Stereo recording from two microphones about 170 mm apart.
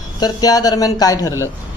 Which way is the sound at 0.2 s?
20° left (ahead or behind).